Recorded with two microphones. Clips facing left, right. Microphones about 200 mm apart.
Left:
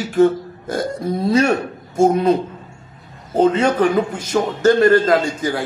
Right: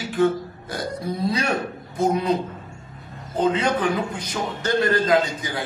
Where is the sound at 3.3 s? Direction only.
45° left (ahead or behind).